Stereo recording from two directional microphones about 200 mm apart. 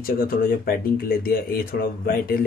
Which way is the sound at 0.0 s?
45° left (ahead or behind).